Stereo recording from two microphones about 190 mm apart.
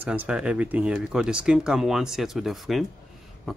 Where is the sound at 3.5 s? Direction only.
Centre (ahead or behind).